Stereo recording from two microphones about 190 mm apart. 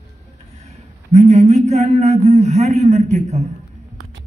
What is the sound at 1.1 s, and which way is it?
A man's voice, 35° right (ahead or behind).